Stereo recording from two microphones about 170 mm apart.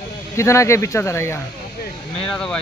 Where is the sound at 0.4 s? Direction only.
15° left (ahead or behind).